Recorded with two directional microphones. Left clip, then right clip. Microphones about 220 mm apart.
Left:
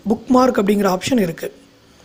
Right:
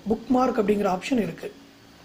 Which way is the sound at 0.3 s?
40° left (ahead or behind).